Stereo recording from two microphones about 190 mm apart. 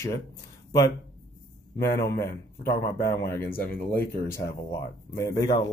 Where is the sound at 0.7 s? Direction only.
15° left (ahead or behind).